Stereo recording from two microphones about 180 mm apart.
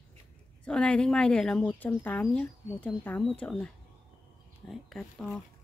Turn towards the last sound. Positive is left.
turn(degrees=0)  # may be behind; listen again after turning